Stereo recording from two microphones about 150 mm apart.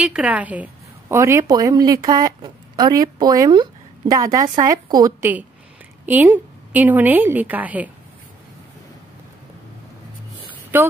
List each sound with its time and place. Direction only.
0.0 s a woman's voice: 5° right (ahead or behind); by 5.1 s 25° right (ahead or behind)
6.0 s a woman's voice: 10° right (ahead or behind)
10.7 s speech: 10° right (ahead or behind)